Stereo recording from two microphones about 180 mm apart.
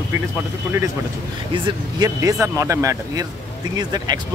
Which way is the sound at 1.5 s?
20° right (ahead or behind).